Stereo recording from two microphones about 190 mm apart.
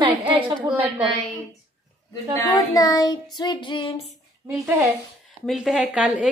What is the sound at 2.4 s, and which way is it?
Child singing, 20° left (ahead or behind).